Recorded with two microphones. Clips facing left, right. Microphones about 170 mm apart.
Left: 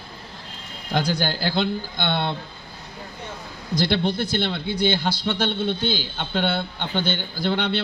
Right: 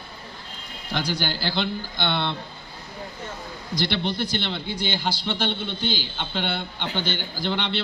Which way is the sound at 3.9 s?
45° left (ahead or behind).